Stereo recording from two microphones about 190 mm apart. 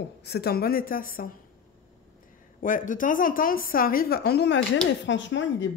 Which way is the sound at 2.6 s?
45° left (ahead or behind).